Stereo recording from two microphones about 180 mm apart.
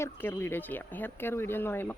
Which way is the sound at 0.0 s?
15° left (ahead or behind).